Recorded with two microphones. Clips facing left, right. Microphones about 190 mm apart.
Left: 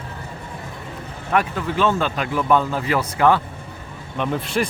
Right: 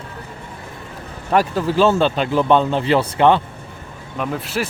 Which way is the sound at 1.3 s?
35° right (ahead or behind).